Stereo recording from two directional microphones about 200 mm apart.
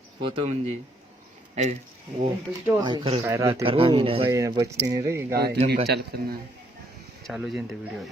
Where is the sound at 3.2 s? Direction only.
15° right (ahead or behind).